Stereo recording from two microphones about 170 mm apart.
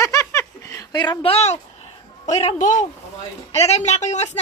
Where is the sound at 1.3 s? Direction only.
40° left (ahead or behind).